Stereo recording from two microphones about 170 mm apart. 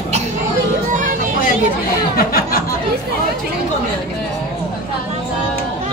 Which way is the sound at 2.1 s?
60° left (ahead or behind).